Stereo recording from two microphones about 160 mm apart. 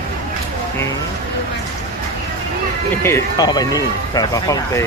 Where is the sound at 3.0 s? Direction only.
20° left (ahead or behind).